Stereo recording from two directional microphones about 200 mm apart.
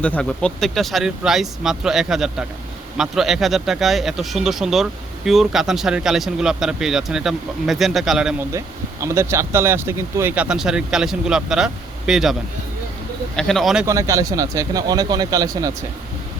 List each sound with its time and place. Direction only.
0.0 s speech: 5° left (ahead or behind)
8.5 s speech: 15° right (ahead or behind)
13.8 s speech: 15° right (ahead or behind)